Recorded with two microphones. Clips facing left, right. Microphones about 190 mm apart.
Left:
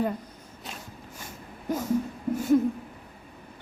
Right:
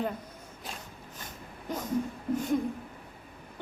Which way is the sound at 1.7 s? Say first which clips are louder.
Left 4 dB; 10° left (ahead or behind).